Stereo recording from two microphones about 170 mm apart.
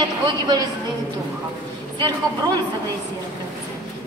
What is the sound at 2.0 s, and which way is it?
Speech, 25° right (ahead or behind).